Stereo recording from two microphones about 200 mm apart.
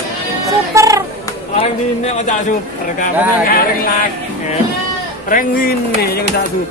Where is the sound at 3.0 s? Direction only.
45° left (ahead or behind).